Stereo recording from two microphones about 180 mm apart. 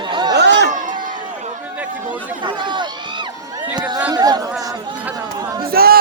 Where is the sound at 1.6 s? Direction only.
10° right (ahead or behind).